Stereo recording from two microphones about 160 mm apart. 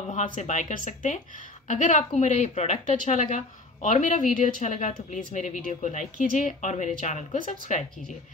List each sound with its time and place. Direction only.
0.4 s a woman's voice: 50° left (ahead or behind)